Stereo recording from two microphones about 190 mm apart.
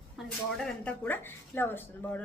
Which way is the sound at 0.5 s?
Centre (ahead or behind).